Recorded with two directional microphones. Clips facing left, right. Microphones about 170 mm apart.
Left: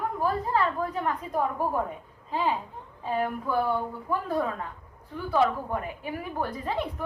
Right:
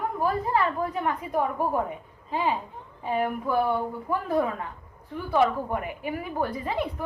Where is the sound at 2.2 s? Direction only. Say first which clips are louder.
Right 1 dB; 15° right (ahead or behind).